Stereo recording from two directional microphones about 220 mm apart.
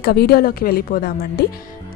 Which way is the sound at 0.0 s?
45° left (ahead or behind).